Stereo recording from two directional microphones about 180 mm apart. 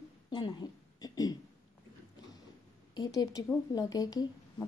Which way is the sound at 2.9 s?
20° left (ahead or behind).